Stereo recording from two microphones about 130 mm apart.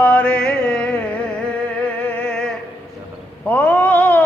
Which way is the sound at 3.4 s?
15° left (ahead or behind).